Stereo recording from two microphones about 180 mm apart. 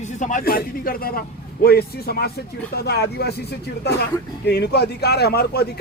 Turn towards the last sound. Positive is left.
turn(degrees=65)  # may be behind; listen again after turning